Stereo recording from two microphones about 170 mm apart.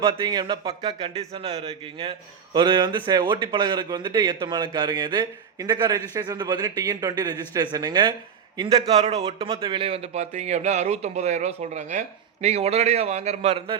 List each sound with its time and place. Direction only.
0.0 s a man's voice: 30° right (ahead or behind)
0.9 s a man's voice: 35° right (ahead or behind)
9.2 s a man's voice: 35° right (ahead or behind)